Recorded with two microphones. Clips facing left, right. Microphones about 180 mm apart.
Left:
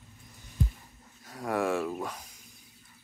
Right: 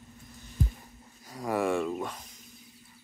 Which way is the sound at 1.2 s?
Centre (ahead or behind).